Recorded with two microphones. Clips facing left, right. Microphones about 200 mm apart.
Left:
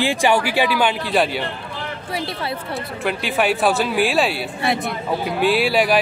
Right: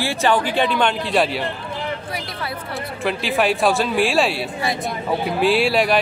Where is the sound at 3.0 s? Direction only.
Centre (ahead or behind).